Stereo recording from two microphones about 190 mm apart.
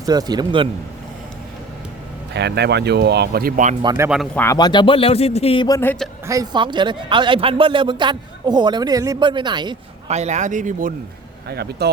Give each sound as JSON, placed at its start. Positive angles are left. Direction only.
{"t": 0.0, "sound": "a man's voice", "side_deg": -20}
{"t": 2.3, "sound": "speech", "side_deg": -60}
{"t": 3.8, "sound": "speech", "side_deg": -15}
{"t": 4.4, "sound": "a man's voice", "side_deg": 15}
{"t": 5.6, "sound": "a man's voice", "side_deg": 15}
{"t": 6.2, "sound": "a man's voice", "side_deg": -20}
{"t": 10.1, "sound": "speech", "side_deg": -35}
{"t": 11.4, "sound": "speech", "side_deg": -60}